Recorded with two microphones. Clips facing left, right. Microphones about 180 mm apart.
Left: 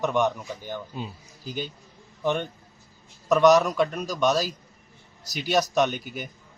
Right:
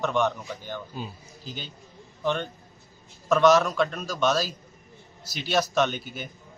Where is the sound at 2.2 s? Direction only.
10° left (ahead or behind).